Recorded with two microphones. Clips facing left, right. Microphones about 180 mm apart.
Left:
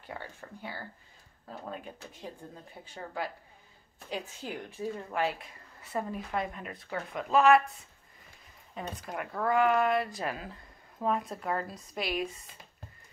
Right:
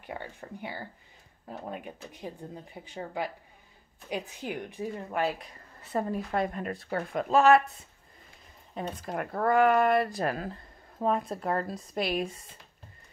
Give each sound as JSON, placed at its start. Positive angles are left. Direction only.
{"t": 0.0, "sound": "speech", "side_deg": -20}
{"t": 2.8, "sound": "speech", "side_deg": -15}
{"t": 5.9, "sound": "a woman's voice", "side_deg": -45}
{"t": 8.7, "sound": "a woman's voice", "side_deg": -40}